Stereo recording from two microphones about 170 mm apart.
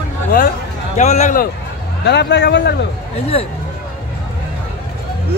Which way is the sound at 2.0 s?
85° left.